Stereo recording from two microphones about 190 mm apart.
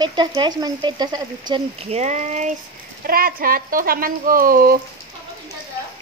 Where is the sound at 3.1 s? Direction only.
50° right (ahead or behind).